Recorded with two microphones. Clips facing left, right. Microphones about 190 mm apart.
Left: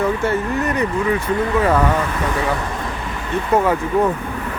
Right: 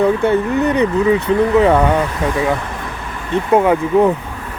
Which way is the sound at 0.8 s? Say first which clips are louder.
Right 5 dB; 20° right (ahead or behind).